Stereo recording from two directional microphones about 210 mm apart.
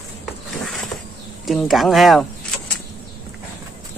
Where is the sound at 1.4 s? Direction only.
Centre (ahead or behind).